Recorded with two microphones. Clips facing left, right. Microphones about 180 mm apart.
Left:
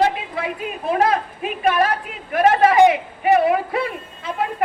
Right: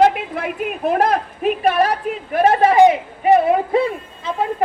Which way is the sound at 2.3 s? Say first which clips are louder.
Right 1 dB; 30° right (ahead or behind).